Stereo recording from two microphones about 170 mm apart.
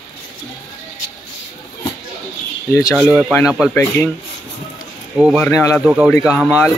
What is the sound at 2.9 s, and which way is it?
Speech, centre (ahead or behind).